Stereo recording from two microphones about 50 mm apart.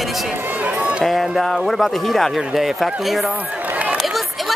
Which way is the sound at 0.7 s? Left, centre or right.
Right.